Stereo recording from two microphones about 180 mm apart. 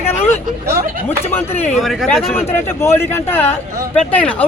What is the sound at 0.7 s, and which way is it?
Speech, 55° right (ahead or behind).